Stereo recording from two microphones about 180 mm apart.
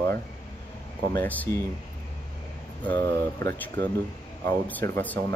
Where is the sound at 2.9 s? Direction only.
15° left (ahead or behind).